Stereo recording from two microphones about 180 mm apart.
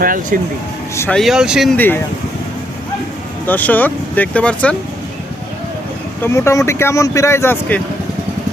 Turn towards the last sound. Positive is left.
turn(degrees=15)  # may be behind; listen again after turning